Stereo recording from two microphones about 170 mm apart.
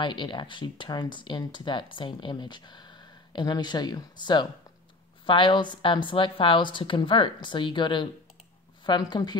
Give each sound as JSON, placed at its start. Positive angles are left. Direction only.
{"t": 0.0, "sound": "speech", "side_deg": 30}